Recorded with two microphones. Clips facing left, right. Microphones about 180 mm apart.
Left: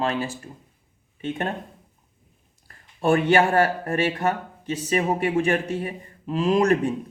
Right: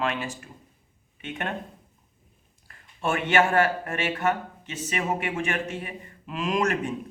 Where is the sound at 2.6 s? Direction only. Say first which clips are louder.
Left 7 dB; 35° left (ahead or behind).